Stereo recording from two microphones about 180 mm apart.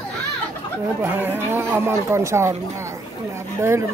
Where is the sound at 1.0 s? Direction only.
10° right (ahead or behind).